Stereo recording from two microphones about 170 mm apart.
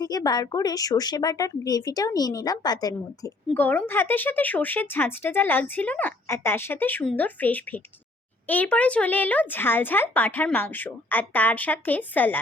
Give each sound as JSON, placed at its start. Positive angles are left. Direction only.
{"t": 0.0, "sound": "a woman's voice", "side_deg": 20}
{"t": 3.5, "sound": "speech", "side_deg": 10}